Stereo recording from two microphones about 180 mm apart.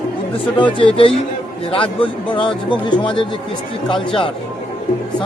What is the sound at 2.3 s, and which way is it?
Speech, 25° left (ahead or behind).